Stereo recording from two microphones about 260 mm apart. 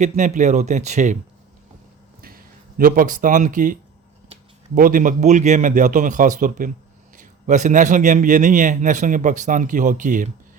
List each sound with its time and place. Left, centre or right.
0.0 s a man's voice: right
2.2 s a man's voice: right